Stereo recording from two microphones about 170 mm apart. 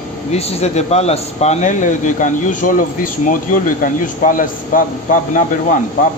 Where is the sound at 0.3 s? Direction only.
40° left (ahead or behind).